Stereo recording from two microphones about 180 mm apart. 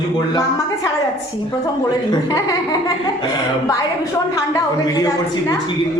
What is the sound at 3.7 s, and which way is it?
A woman's voice, 20° left (ahead or behind).